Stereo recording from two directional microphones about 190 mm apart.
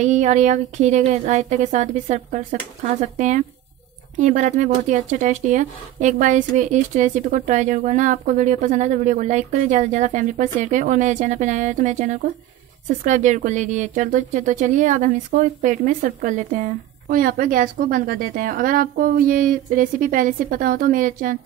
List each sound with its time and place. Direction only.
0.0 s speech: 40° right (ahead or behind)